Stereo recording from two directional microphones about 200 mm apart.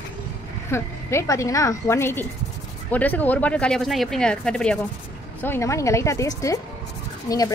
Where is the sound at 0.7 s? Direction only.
15° left (ahead or behind).